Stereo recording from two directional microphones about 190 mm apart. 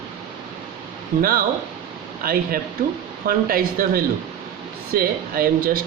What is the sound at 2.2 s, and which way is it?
Speech, 50° right (ahead or behind).